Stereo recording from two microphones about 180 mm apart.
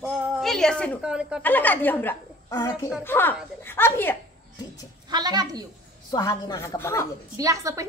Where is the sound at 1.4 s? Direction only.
10° left (ahead or behind).